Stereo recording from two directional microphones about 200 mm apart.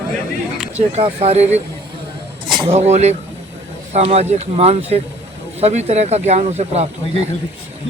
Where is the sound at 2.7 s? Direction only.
35° right (ahead or behind).